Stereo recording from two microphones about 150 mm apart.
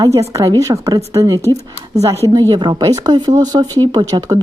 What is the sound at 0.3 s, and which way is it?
A woman's voice, 20° right (ahead or behind).